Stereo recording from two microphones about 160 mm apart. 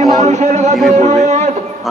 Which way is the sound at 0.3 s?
45° right (ahead or behind).